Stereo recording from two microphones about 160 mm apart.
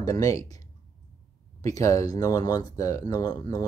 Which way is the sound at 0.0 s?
20° left (ahead or behind).